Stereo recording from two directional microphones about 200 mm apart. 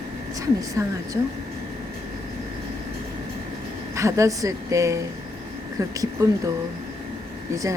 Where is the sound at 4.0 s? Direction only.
15° right (ahead or behind).